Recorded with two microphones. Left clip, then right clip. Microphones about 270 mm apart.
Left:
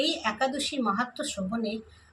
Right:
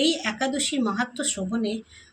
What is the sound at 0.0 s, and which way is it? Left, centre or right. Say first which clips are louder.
Speech: right 3 dB; centre.